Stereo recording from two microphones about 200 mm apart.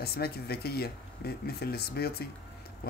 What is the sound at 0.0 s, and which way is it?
Speech, 50° left (ahead or behind).